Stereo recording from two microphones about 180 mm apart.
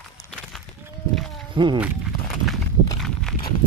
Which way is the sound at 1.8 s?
Centre (ahead or behind).